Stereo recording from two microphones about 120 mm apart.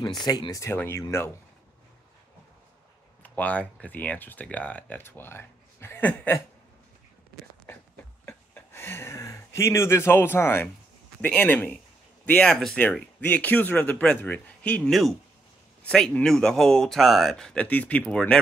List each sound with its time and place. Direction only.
0.0 s speech: 35° left (ahead or behind); by 1.0 s 20° left (ahead or behind)
3.2 s speech: 10° left (ahead or behind)
7.7 s a sound: 20° left (ahead or behind)
11.1 s speech: 10° left (ahead or behind)